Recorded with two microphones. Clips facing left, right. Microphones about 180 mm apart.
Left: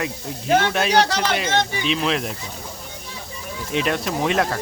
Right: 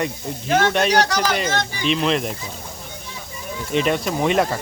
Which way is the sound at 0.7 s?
Centre (ahead or behind).